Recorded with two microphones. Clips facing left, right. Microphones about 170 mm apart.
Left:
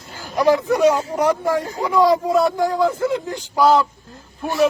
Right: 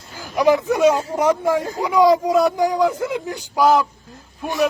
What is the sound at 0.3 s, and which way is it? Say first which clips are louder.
Speech: even; 15° right (ahead or behind).